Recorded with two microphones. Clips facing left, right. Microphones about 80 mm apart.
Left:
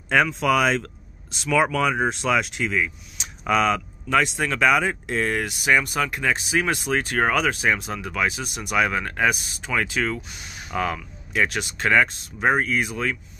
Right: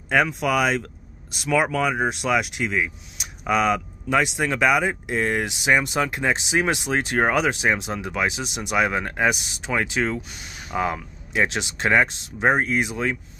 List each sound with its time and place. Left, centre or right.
0.1 s speech: centre